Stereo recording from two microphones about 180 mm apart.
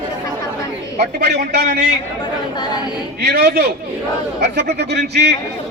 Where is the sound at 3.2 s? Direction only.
65° right (ahead or behind).